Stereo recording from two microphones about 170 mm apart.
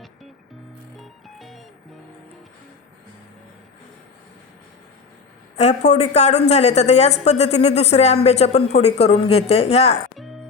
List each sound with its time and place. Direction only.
0.9 s music: centre (ahead or behind)
5.5 s speech: 40° left (ahead or behind)